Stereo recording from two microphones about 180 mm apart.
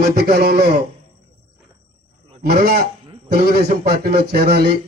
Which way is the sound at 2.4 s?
60° right (ahead or behind).